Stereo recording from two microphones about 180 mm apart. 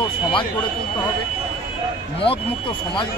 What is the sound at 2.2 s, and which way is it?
Speech, 30° left (ahead or behind).